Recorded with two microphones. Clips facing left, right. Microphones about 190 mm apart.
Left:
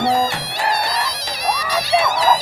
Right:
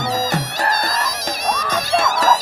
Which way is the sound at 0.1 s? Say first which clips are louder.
Left 2 dB; 45° right (ahead or behind).